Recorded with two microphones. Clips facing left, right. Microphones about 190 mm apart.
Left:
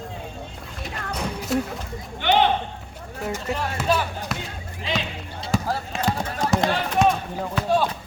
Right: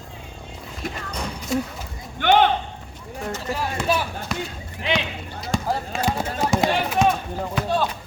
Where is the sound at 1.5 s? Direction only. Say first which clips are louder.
Even; centre (ahead or behind).